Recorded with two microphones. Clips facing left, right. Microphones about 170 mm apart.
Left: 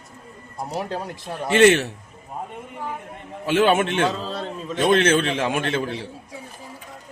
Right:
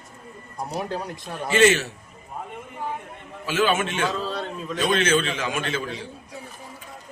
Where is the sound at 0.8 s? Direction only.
Centre (ahead or behind).